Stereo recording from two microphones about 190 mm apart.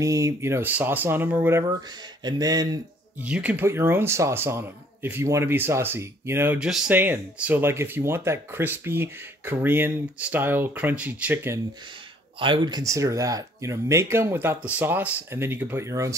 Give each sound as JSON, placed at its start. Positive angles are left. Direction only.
{"t": 0.0, "sound": "speech", "side_deg": -15}
{"t": 3.2, "sound": "speech", "side_deg": -5}
{"t": 12.4, "sound": "speech", "side_deg": -25}